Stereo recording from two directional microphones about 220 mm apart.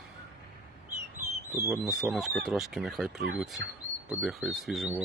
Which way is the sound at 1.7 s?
Centre (ahead or behind).